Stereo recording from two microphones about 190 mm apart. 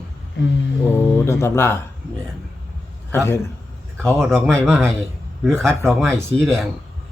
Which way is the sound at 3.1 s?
15° left (ahead or behind).